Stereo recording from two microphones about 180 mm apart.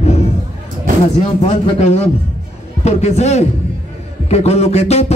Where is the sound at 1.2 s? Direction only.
35° left (ahead or behind).